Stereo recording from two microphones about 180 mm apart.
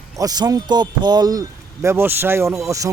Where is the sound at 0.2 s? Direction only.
20° right (ahead or behind).